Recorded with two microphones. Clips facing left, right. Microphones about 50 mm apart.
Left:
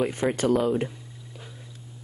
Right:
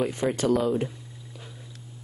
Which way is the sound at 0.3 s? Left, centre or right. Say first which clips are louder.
Left 1 dB; centre.